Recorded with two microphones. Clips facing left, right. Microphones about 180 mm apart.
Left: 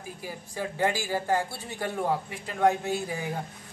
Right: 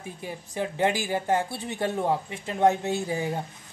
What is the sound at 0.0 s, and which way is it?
Speech, 25° right (ahead or behind).